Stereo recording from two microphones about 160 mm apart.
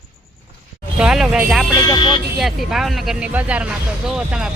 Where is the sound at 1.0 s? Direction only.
5° right (ahead or behind).